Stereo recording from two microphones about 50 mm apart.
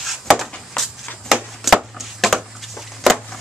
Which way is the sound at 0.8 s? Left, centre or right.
Centre.